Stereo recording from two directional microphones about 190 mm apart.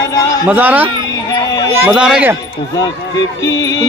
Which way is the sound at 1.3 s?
20° left (ahead or behind).